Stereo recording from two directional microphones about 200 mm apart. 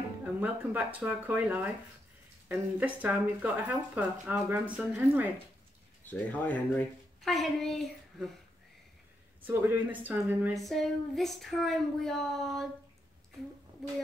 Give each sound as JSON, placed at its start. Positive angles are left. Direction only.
{"t": 0.2, "sound": "speech", "side_deg": -10}
{"t": 6.0, "sound": "a woman's voice", "side_deg": 10}
{"t": 9.5, "sound": "speech", "side_deg": -10}